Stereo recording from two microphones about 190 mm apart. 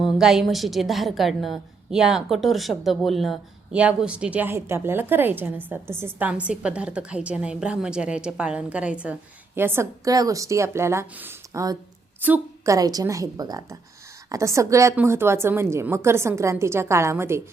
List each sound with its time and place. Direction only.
0.0 s a woman's voice: centre (ahead or behind)